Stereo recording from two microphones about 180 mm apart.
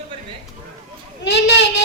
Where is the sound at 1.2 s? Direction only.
70° left (ahead or behind).